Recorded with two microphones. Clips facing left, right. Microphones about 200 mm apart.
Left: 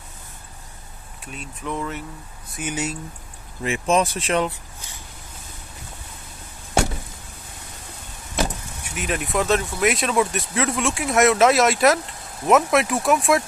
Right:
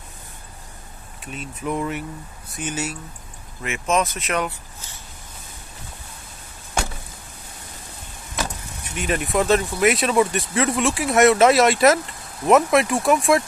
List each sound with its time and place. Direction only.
1.2 s speech: centre (ahead or behind)
1.7 s speech: 15° right (ahead or behind)
2.6 s speech: 15° left (ahead or behind)
3.6 s speech: 35° left (ahead or behind)
8.9 s speech: centre (ahead or behind)